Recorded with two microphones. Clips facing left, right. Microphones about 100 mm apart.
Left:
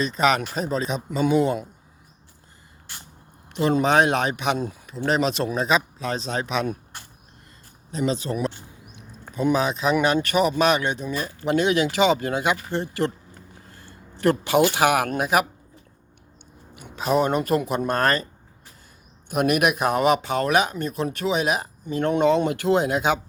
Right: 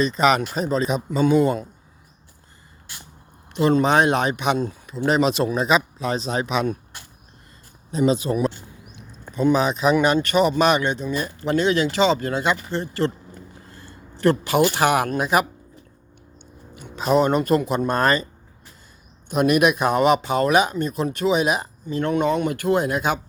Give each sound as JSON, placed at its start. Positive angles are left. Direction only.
{"t": 0.0, "sound": "speech", "side_deg": 0}
{"t": 3.5, "sound": "speech", "side_deg": 5}
{"t": 7.9, "sound": "speech", "side_deg": -10}
{"t": 9.1, "sound": "speech", "side_deg": 5}
{"t": 13.7, "sound": "a sound", "side_deg": 10}
{"t": 15.2, "sound": "speech", "side_deg": 5}
{"t": 16.7, "sound": "speech", "side_deg": 5}
{"t": 19.3, "sound": "speech", "side_deg": 5}
{"t": 21.8, "sound": "speech", "side_deg": 20}